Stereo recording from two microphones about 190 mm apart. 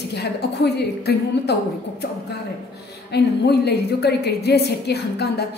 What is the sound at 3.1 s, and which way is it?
A woman's voice, 60° left (ahead or behind).